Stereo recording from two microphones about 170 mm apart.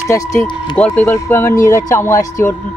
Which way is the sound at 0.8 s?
10° left (ahead or behind).